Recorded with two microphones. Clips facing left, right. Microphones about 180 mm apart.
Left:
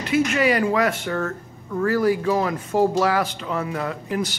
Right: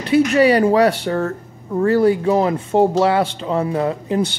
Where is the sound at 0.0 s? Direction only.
35° right (ahead or behind).